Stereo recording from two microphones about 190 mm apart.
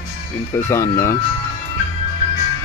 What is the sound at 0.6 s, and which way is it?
Speech, 15° left (ahead or behind).